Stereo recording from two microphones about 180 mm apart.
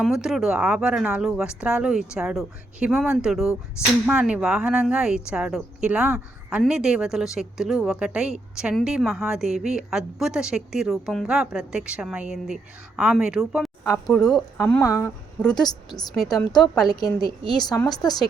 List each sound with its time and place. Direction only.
0.0 s a woman's voice: centre (ahead or behind)
14.8 s speech: 15° left (ahead or behind)
16.6 s a woman's voice: centre (ahead or behind)
16.9 s speech: 20° left (ahead or behind)